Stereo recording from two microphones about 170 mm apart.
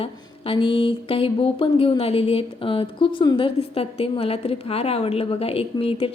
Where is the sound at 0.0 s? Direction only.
30° left (ahead or behind).